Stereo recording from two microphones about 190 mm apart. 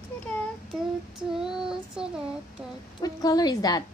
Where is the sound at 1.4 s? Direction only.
5° right (ahead or behind).